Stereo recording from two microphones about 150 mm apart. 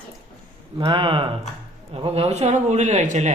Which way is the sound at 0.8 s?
35° right (ahead or behind).